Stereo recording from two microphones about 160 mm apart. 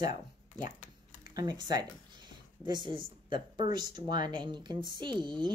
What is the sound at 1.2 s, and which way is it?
Speech, 25° right (ahead or behind).